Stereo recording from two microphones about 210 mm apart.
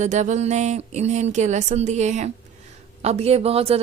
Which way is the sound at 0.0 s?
35° right (ahead or behind).